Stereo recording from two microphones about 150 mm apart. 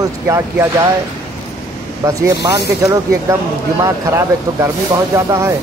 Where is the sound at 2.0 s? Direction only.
20° right (ahead or behind).